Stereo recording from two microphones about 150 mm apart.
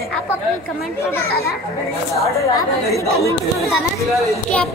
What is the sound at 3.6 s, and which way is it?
Speech, centre (ahead or behind).